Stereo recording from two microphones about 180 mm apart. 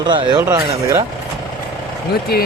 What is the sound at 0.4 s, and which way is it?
Speech, 15° right (ahead or behind).